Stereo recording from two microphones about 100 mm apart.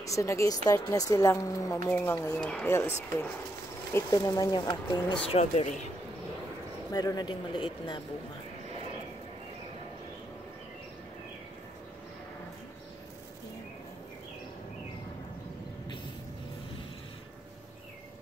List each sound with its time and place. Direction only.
0.0 s speech: 30° left (ahead or behind)
1.9 s speech: 20° left (ahead or behind); by 5.2 s 45° left (ahead or behind)
5.3 s speech: 90° left
6.9 s speech: 40° left (ahead or behind)